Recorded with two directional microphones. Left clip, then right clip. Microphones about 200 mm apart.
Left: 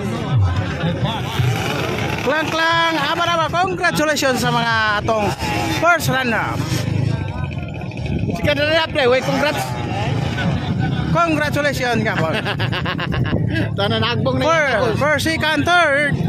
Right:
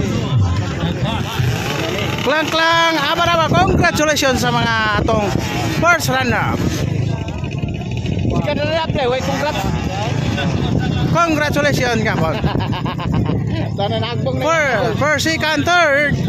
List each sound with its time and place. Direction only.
2.2 s speech: 10° right (ahead or behind)
8.5 s speech: 45° left (ahead or behind)
11.1 s speech: 10° right (ahead or behind)
14.4 s speech: 5° right (ahead or behind)